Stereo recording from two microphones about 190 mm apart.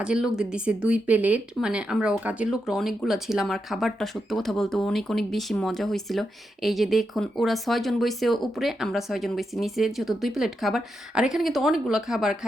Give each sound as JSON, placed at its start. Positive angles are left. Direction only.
{"t": 0.0, "sound": "speech", "side_deg": -5}